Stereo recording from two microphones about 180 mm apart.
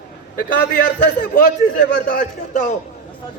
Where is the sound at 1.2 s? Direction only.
70° left (ahead or behind).